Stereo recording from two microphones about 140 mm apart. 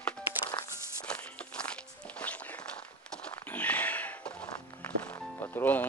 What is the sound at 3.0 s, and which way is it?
Horse, 5° left (ahead or behind).